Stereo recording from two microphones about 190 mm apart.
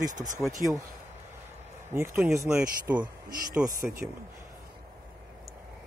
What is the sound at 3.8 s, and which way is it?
Speech, 50° right (ahead or behind).